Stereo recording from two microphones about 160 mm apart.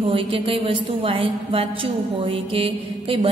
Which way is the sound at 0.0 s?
35° right (ahead or behind).